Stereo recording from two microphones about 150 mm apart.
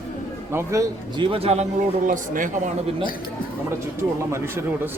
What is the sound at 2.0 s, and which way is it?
Speech, 60° right (ahead or behind).